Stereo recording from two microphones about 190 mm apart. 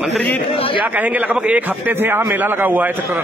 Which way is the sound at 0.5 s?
30° left (ahead or behind).